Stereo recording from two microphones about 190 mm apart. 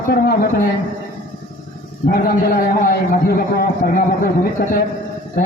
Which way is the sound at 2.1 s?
50° left (ahead or behind).